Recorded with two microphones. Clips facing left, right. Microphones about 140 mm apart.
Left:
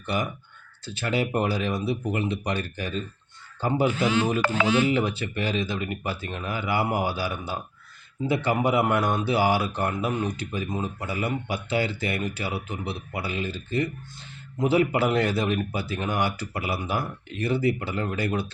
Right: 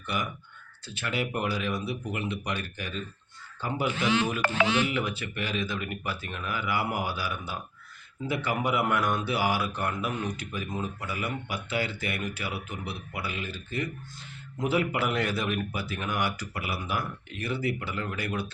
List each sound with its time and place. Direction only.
0.0 s a man's voice: 30° left (ahead or behind)